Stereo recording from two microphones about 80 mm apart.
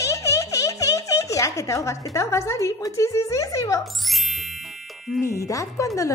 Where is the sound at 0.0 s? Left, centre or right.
Left.